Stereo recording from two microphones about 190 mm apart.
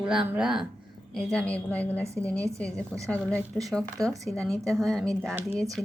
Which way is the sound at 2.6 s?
5° left (ahead or behind).